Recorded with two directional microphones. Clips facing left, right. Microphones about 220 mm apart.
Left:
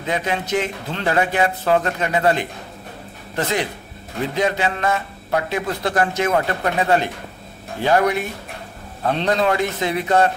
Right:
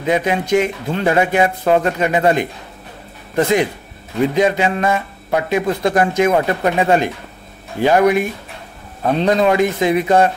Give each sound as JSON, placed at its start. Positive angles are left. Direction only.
{"t": 0.0, "sound": "a man's voice", "side_deg": -15}